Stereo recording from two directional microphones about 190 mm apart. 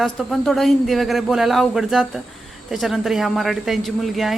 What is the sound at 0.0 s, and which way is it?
A woman's voice, centre (ahead or behind).